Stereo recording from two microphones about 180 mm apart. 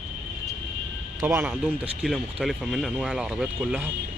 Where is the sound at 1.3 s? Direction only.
5° right (ahead or behind).